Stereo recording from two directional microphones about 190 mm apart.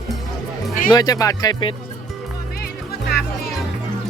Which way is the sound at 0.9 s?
20° left (ahead or behind).